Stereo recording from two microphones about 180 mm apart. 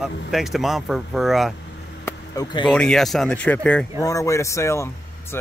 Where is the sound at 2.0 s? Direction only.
20° left (ahead or behind).